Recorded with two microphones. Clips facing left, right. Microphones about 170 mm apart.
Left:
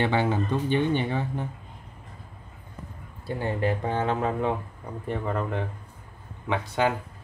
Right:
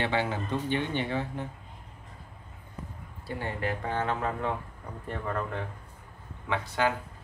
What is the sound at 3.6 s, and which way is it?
Speech, 20° left (ahead or behind).